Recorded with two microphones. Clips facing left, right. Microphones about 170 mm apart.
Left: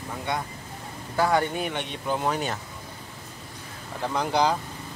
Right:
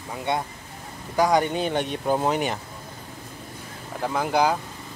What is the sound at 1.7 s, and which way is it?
Speech, 35° right (ahead or behind).